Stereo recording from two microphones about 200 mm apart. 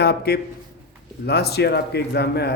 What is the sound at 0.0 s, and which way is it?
A man's voice, 55° left (ahead or behind).